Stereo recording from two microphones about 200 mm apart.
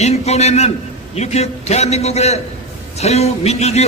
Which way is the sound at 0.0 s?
35° left (ahead or behind).